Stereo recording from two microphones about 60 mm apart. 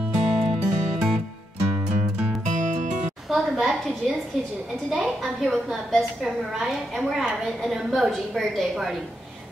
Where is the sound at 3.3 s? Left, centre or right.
Centre.